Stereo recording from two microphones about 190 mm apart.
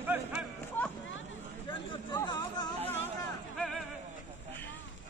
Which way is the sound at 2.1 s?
20° left (ahead or behind).